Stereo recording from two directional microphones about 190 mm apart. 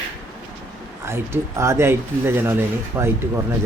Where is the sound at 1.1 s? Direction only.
15° right (ahead or behind).